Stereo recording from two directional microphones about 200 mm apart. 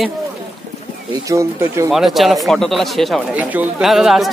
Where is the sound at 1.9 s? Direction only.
Centre (ahead or behind).